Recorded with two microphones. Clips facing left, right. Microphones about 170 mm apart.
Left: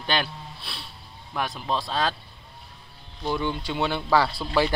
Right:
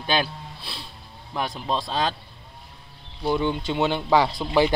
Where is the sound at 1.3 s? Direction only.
15° right (ahead or behind).